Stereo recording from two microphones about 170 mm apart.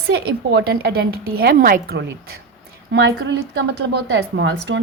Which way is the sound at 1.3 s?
60° right (ahead or behind).